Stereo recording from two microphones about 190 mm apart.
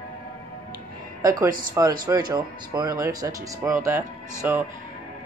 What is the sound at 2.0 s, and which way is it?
Speech, 20° right (ahead or behind).